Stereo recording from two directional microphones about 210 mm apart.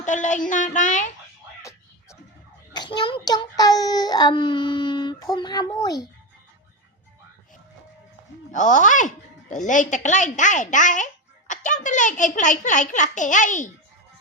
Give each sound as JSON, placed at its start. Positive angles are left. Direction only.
{"t": 0.0, "sound": "a child's voice", "side_deg": 35}
{"t": 2.7, "sound": "a child's voice", "side_deg": 20}
{"t": 8.5, "sound": "a child's voice", "side_deg": 35}